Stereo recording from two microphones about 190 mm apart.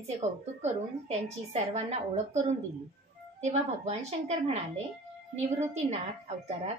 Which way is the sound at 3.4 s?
35° right (ahead or behind).